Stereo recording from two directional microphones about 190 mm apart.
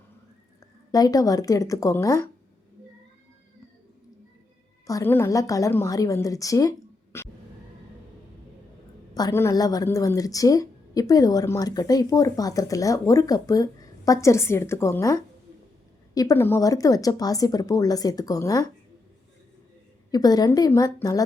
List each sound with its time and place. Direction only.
0.9 s a woman's voice: 20° left (ahead or behind)
4.9 s a woman's voice: 15° left (ahead or behind)
9.1 s a woman's voice: 15° left (ahead or behind)
20.1 s speech: 20° left (ahead or behind)